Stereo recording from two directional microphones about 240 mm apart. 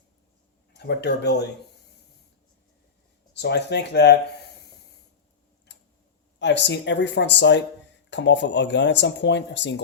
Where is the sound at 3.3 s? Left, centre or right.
Left.